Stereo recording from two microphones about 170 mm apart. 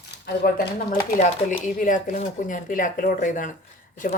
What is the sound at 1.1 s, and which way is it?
Speech, 45° left (ahead or behind).